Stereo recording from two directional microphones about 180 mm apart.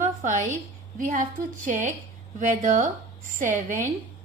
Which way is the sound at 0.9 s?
45° right (ahead or behind).